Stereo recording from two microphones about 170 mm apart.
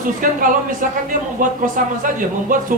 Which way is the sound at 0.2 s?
50° right (ahead or behind).